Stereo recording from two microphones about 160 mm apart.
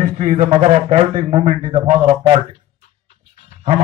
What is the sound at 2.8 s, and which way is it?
Dog, 45° left (ahead or behind).